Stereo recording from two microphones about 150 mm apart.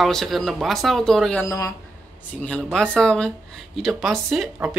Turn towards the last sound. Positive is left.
turn(degrees=0)  # may be behind; listen again after turning